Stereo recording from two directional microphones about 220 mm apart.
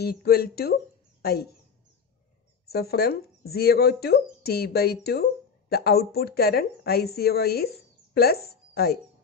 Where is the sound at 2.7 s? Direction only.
45° left (ahead or behind).